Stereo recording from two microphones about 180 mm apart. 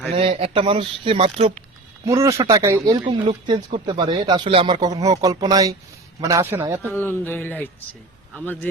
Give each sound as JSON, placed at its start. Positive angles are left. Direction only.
{"t": 0.1, "sound": "speech", "side_deg": -30}
{"t": 2.0, "sound": "a man's voice", "side_deg": -15}
{"t": 6.8, "sound": "speech", "side_deg": 10}